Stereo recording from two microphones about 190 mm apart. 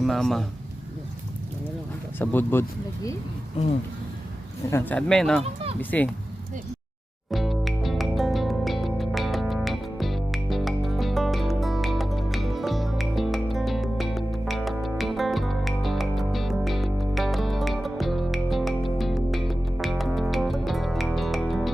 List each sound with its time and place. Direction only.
0.0 s a man's voice: centre (ahead or behind)
2.1 s speech: 10° left (ahead or behind)
4.7 s speech: 5° left (ahead or behind)
7.3 s music: centre (ahead or behind)